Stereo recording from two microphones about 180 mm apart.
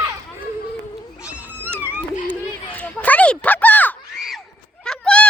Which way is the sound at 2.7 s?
10° left (ahead or behind).